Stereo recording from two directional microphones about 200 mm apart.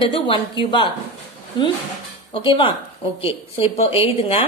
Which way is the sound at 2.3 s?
25° left (ahead or behind).